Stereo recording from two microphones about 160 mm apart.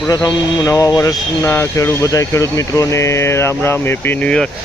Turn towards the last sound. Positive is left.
turn(degrees=5)  # may be behind; listen again after turning